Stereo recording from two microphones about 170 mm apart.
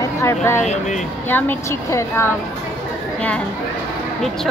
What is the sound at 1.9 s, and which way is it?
Speech, 15° left (ahead or behind).